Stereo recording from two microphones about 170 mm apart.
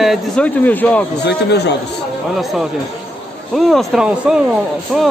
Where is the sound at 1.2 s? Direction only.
85° left.